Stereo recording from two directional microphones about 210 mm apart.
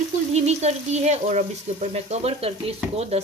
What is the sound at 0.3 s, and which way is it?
A woman's voice, 30° right (ahead or behind).